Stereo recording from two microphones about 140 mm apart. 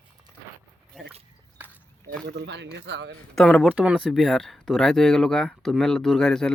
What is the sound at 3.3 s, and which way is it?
Speech, centre (ahead or behind).